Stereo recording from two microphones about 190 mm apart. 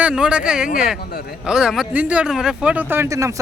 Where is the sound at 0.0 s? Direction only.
5° right (ahead or behind).